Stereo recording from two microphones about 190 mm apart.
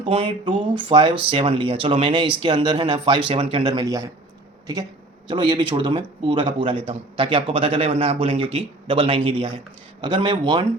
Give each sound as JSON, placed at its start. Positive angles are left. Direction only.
{"t": 0.1, "sound": "speech", "side_deg": -30}